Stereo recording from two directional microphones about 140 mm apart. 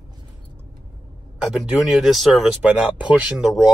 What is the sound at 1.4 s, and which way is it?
Speech, 5° right (ahead or behind).